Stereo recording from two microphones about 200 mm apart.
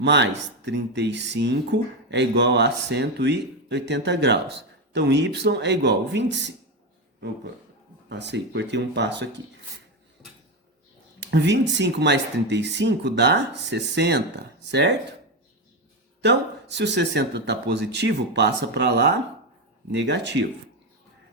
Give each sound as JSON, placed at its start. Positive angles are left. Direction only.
{"t": 0.0, "sound": "speech", "side_deg": -60}
{"t": 8.1, "sound": "speech", "side_deg": -60}
{"t": 11.2, "sound": "speech", "side_deg": -60}
{"t": 16.2, "sound": "speech", "side_deg": -60}